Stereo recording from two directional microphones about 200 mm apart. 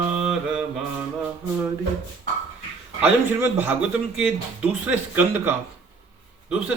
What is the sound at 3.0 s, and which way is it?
Speech, 10° right (ahead or behind).